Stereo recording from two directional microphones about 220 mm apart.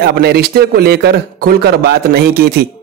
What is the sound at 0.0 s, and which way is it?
A man's voice, 45° right (ahead or behind).